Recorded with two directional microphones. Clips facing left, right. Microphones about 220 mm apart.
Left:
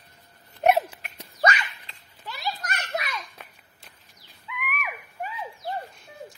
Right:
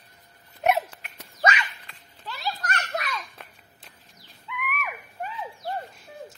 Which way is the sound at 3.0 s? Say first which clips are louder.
Even; centre (ahead or behind).